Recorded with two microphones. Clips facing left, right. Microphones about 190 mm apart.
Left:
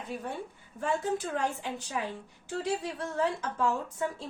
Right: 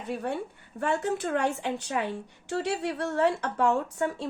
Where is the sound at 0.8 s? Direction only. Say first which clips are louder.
Right 3 dB; 70° right (ahead or behind).